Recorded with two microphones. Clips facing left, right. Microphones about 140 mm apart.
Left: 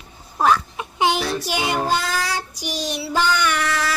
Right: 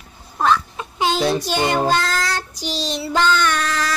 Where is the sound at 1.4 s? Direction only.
10° left (ahead or behind).